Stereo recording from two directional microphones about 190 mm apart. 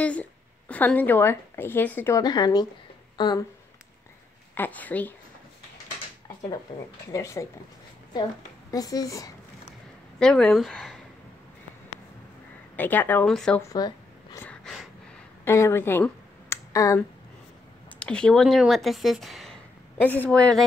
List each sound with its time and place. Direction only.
0.0 s a woman's voice: 5° left (ahead or behind)
4.6 s a woman's voice: 10° left (ahead or behind)
7.1 s a woman's voice: 15° left (ahead or behind)
8.7 s speech: 20° left (ahead or behind)
10.1 s speech: 5° left (ahead or behind)
12.7 s a woman's voice: 10° left (ahead or behind)
13.6 s a sound: 20° left (ahead or behind)
14.4 s a sound: 5° left (ahead or behind)
15.4 s a sound: 15° left (ahead or behind)
17.8 s speech: 5° left (ahead or behind)